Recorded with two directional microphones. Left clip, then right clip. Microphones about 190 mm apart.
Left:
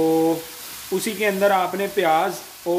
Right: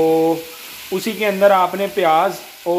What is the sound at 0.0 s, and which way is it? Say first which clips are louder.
Speech: right 4 dB; 5° left (ahead or behind).